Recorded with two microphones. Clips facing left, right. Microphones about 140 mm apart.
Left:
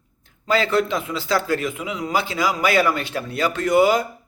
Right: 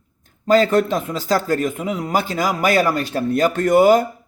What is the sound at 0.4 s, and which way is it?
A man's voice, 45° right (ahead or behind).